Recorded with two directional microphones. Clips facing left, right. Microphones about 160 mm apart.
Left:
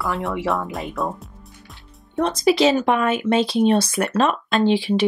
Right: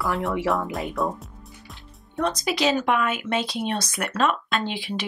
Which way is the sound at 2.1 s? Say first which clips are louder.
Left 7 dB; 30° left (ahead or behind).